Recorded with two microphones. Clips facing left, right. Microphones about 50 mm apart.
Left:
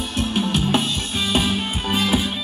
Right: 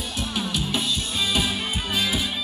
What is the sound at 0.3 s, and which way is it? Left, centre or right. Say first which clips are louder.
Music: left 7 dB; left.